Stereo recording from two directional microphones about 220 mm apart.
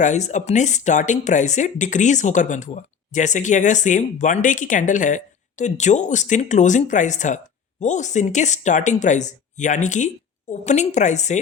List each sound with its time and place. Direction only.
0.0 s speech: 35° left (ahead or behind)